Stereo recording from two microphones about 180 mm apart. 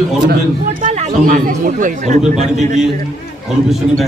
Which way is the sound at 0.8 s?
40° right (ahead or behind).